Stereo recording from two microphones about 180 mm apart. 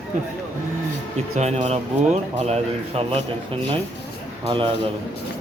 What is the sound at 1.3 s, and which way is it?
A man's voice, 40° right (ahead or behind).